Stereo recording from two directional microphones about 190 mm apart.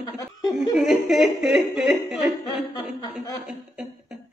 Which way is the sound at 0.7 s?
Centre (ahead or behind).